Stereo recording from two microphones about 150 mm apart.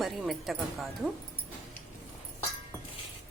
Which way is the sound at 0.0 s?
Centre (ahead or behind).